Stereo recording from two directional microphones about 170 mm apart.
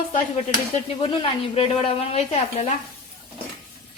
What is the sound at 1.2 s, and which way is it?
Speech, 35° left (ahead or behind).